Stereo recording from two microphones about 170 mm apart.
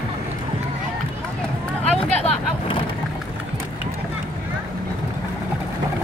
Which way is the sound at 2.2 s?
35° left (ahead or behind).